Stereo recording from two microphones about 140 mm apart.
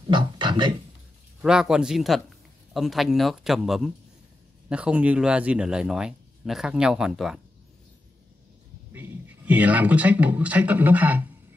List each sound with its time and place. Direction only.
0.1 s a sound: 35° right (ahead or behind)
1.4 s a man's voice: 5° right (ahead or behind)
9.5 s a man's voice: 10° right (ahead or behind)